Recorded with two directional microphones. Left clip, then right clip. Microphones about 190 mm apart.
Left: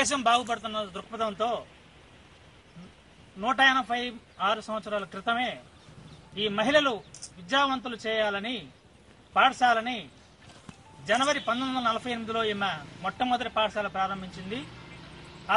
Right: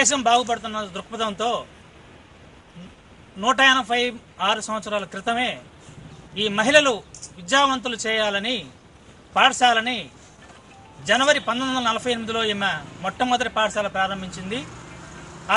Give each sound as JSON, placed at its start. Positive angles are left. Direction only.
{"t": 0.0, "sound": "a man's voice", "side_deg": -5}
{"t": 3.3, "sound": "a man's voice", "side_deg": -15}
{"t": 11.1, "sound": "a man's voice", "side_deg": -10}